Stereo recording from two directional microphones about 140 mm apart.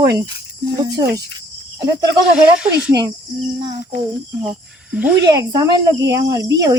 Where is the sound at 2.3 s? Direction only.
10° right (ahead or behind).